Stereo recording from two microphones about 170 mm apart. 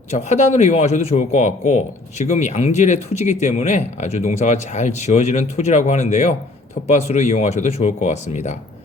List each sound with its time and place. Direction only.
0.1 s speech: 40° left (ahead or behind)